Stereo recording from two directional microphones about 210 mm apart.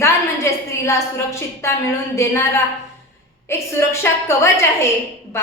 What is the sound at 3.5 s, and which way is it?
A woman's voice, 15° left (ahead or behind).